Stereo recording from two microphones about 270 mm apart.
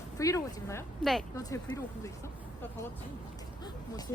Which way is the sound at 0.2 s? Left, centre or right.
Centre.